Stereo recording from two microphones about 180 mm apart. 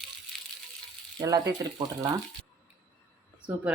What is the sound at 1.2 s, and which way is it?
Speech, 25° right (ahead or behind).